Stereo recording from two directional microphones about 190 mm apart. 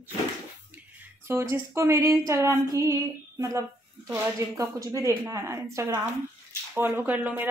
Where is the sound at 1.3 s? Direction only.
15° right (ahead or behind).